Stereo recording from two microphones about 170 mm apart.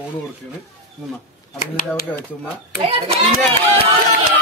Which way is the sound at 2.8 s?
35° right (ahead or behind).